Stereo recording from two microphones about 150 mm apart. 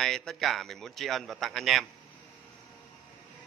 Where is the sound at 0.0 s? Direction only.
5° left (ahead or behind).